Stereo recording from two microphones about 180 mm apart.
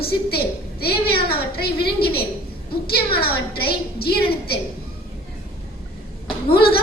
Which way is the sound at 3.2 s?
60° left (ahead or behind).